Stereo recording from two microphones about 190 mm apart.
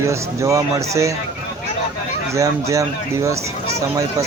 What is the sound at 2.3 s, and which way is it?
A man's voice, 15° right (ahead or behind).